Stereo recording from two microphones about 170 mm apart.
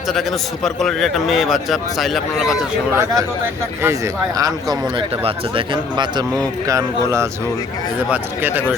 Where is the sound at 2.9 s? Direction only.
20° right (ahead or behind).